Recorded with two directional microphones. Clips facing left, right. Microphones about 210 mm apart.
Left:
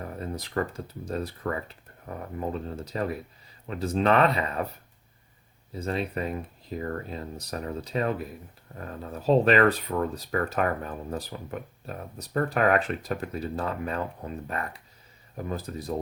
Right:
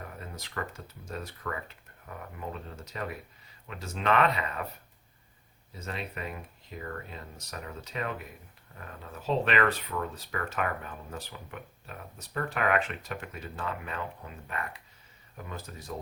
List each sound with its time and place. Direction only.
0.2 s speech: 35° left (ahead or behind)
5.8 s speech: 35° left (ahead or behind)